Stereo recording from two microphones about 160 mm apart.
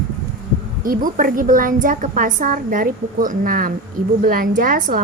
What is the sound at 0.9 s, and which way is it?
A woman's voice, 60° right (ahead or behind).